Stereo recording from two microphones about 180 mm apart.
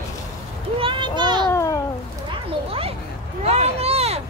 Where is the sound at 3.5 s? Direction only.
35° right (ahead or behind).